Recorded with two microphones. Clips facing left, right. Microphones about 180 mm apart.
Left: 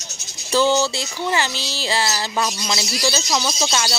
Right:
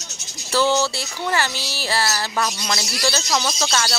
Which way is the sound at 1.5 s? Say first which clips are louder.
Left 1 dB; 10° right (ahead or behind).